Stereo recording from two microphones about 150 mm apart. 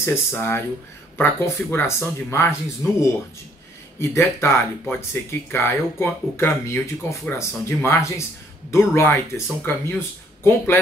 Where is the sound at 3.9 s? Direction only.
20° left (ahead or behind).